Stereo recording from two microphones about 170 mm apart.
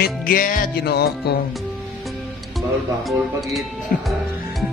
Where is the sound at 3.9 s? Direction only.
55° left (ahead or behind).